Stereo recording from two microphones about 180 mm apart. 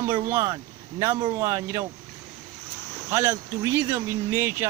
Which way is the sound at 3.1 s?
15° right (ahead or behind).